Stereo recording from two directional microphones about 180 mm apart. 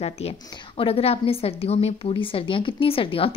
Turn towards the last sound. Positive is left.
turn(degrees=30)  # may be behind; listen again after turning